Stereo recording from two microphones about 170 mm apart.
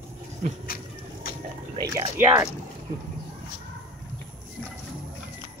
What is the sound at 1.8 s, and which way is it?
Speech, 20° right (ahead or behind).